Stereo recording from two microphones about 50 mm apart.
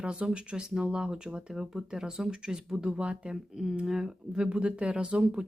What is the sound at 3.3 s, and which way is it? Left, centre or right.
Speech, centre.